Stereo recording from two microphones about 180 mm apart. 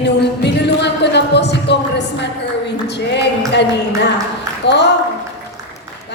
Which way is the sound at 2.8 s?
70° left (ahead or behind).